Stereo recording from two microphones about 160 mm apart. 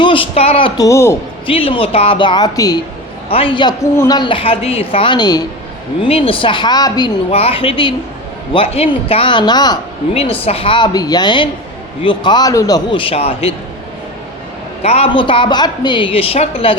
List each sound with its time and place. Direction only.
0.0 s speech: 35° left (ahead or behind)
0.8 s a woman's voice: 20° left (ahead or behind)
1.5 s a woman's voice: 35° left (ahead or behind)
3.2 s a woman's voice: 35° left (ahead or behind)
3.9 s a woman's voice: 15° left (ahead or behind)
4.2 s a woman's voice: 35° left (ahead or behind)
6.0 s a woman's voice: 35° left (ahead or behind)
7.3 s a woman's voice: 40° left (ahead or behind)
10.4 s a man's voice: 35° left (ahead or behind)
14.8 s a woman's voice: 40° left (ahead or behind)